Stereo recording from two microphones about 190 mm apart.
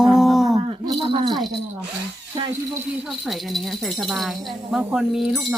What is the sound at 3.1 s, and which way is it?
Speech, centre (ahead or behind).